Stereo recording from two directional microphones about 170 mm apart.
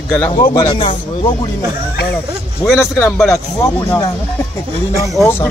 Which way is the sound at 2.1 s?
10° left (ahead or behind).